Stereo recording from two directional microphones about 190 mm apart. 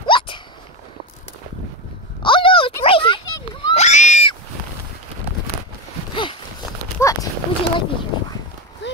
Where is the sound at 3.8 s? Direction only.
40° left (ahead or behind).